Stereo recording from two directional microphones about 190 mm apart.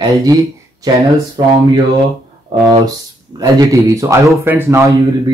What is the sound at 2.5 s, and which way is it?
Speech, 25° right (ahead or behind).